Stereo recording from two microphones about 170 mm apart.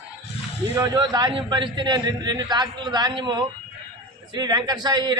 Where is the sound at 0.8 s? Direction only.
25° right (ahead or behind).